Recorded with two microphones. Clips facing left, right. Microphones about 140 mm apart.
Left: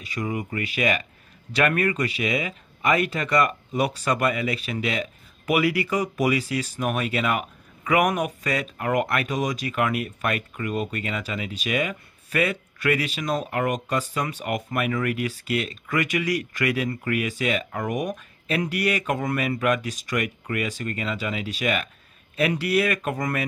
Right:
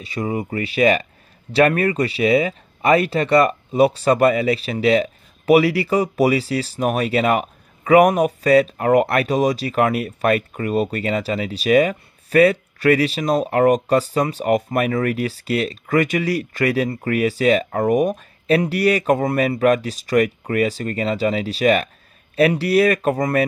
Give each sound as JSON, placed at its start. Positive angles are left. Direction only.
{"t": 0.0, "sound": "speech", "side_deg": -30}